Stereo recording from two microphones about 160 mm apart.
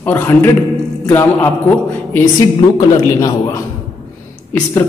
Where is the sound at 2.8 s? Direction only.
25° left (ahead or behind).